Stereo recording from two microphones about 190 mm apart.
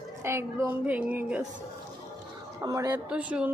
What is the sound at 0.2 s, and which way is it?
A woman's voice, 15° right (ahead or behind).